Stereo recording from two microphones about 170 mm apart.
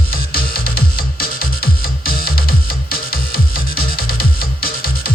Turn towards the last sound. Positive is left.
turn(degrees=60)  # may be behind; listen again after turning